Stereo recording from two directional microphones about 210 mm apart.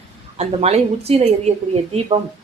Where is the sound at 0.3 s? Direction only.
30° right (ahead or behind).